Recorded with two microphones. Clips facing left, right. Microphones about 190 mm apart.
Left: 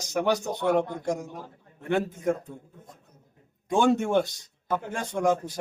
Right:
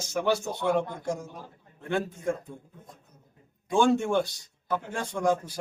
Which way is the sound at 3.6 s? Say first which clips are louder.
Left 1 dB; 20° left (ahead or behind).